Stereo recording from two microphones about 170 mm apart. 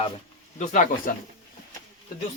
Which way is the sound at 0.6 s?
50° left (ahead or behind).